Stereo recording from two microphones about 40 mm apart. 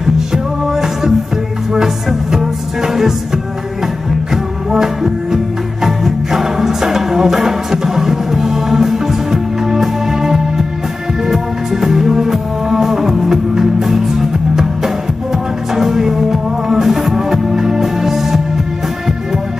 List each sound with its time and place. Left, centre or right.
0.0 s music: centre
4.6 s music: centre